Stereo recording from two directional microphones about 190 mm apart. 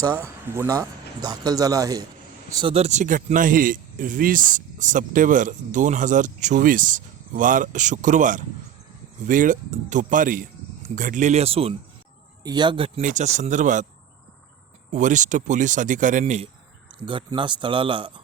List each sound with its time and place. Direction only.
0.0 s speech: 15° right (ahead or behind)
2.7 s speech: 35° right (ahead or behind)
13.0 s speech: 40° right (ahead or behind)
14.9 s speech: 40° right (ahead or behind)
17.0 s speech: 25° right (ahead or behind)